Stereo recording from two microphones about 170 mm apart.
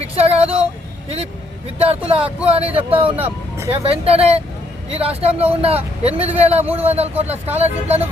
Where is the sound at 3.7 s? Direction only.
35° right (ahead or behind).